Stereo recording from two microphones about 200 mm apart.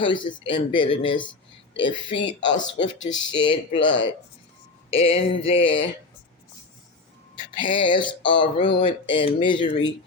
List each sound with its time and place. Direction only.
0.0 s speech: 25° left (ahead or behind)
2.8 s speech: 70° left (ahead or behind)
3.2 s speech: 25° left (ahead or behind)
7.3 s speech: 25° left (ahead or behind)